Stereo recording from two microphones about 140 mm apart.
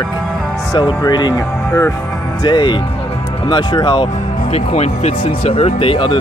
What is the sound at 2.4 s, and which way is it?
Speech, 35° left (ahead or behind).